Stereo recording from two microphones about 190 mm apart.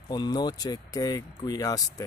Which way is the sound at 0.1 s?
20° left (ahead or behind).